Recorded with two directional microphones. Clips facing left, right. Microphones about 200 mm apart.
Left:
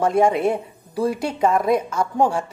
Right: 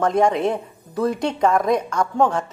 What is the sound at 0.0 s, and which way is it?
A woman's voice, 10° left (ahead or behind).